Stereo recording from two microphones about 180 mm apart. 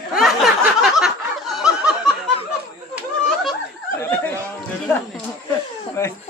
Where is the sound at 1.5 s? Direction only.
5° right (ahead or behind).